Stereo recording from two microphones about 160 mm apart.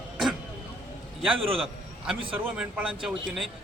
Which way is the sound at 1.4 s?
35° right (ahead or behind).